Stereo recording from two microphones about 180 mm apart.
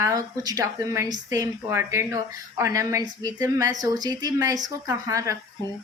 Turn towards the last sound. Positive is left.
turn(degrees=-15)  # may be behind; listen again after turning